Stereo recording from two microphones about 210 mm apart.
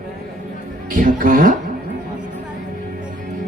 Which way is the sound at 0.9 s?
40° right (ahead or behind).